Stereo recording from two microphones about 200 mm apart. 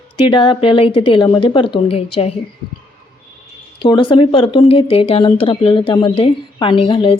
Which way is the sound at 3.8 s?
25° left (ahead or behind).